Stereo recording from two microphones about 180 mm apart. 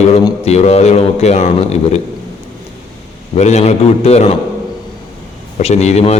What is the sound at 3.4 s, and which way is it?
Speech, 40° left (ahead or behind).